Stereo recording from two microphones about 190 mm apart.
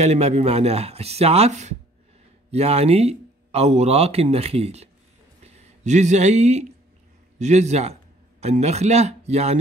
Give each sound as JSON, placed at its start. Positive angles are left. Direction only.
{"t": 0.0, "sound": "a man's voice", "side_deg": -35}